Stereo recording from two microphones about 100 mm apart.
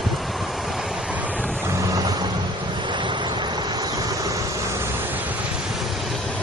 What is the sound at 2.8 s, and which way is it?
Vehicle, 50° right (ahead or behind).